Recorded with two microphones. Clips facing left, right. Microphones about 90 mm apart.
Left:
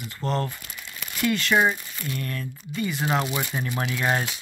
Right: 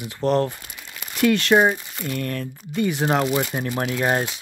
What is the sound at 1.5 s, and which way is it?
Speech, 40° right (ahead or behind).